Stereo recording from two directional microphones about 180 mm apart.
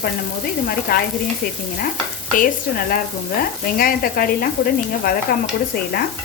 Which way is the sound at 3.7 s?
55° left (ahead or behind).